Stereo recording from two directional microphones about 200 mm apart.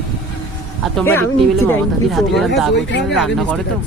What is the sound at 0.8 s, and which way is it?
Speech, centre (ahead or behind).